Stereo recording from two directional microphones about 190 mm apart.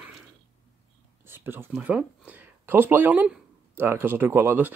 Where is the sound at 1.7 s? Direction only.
5° right (ahead or behind).